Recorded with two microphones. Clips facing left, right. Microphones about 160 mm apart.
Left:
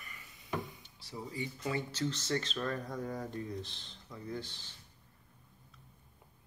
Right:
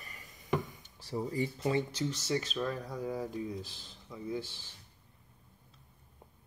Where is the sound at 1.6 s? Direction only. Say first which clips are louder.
Right 2 dB; 20° right (ahead or behind).